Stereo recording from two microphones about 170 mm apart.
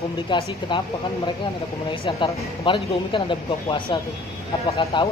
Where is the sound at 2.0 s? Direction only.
30° left (ahead or behind).